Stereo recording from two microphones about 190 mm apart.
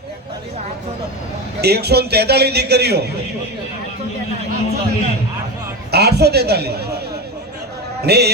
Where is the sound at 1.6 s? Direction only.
60° right (ahead or behind).